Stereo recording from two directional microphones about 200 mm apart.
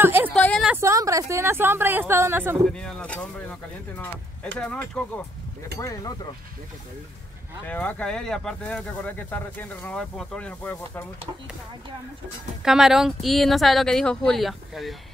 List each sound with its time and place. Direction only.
0.0 s a sound: 10° right (ahead or behind)
0.3 s a sound: 5° left (ahead or behind)
0.7 s a woman's voice: 15° right (ahead or behind)
2.7 s speech: 5° left (ahead or behind)
4.6 s speech: 5° left (ahead or behind)
7.6 s speech: 10° left (ahead or behind)
12.6 s speech: centre (ahead or behind)